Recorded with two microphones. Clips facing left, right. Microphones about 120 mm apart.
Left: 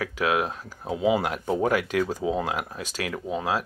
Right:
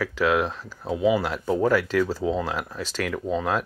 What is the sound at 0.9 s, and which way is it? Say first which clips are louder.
Speech: right 1 dB; 20° left (ahead or behind).